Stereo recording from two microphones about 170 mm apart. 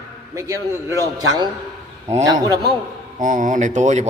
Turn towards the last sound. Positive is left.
turn(degrees=-45)  # may be behind; listen again after turning